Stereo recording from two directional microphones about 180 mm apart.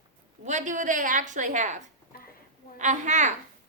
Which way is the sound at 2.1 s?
55° left (ahead or behind).